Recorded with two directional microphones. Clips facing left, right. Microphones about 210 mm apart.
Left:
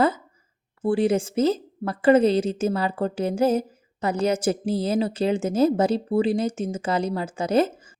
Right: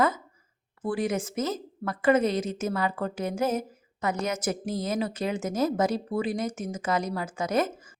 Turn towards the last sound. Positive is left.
turn(degrees=30)  # may be behind; listen again after turning